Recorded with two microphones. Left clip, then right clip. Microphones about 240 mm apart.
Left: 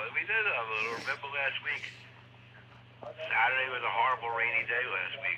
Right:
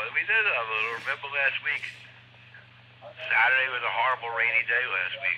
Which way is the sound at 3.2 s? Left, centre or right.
Right.